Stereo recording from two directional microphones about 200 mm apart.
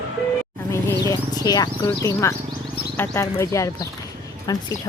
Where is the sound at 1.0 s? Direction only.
15° left (ahead or behind).